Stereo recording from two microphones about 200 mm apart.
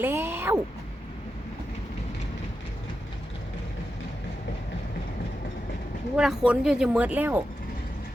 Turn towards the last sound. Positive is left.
turn(degrees=-10)  # may be behind; listen again after turning